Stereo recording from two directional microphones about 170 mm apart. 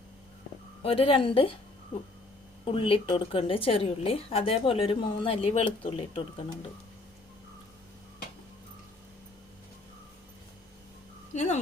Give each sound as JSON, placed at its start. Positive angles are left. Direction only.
{"t": 0.8, "sound": "a woman's voice", "side_deg": 35}
{"t": 2.6, "sound": "a woman's voice", "side_deg": 30}
{"t": 11.3, "sound": "a sound", "side_deg": 40}